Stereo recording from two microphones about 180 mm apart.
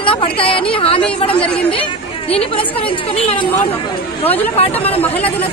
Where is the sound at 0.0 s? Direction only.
30° left (ahead or behind).